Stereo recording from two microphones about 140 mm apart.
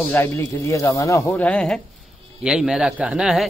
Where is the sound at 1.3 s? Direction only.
10° left (ahead or behind).